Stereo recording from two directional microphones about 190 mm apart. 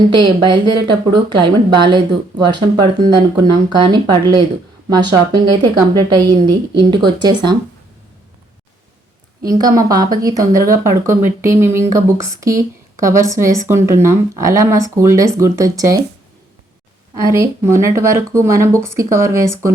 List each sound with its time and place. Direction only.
0.2 s speech: 25° right (ahead or behind)
9.4 s a woman's voice: 20° right (ahead or behind)
17.2 s speech: 15° right (ahead or behind)